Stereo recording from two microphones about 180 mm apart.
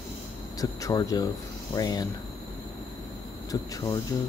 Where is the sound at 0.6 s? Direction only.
20° left (ahead or behind).